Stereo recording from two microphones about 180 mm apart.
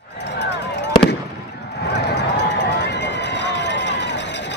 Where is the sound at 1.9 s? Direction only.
75° left (ahead or behind).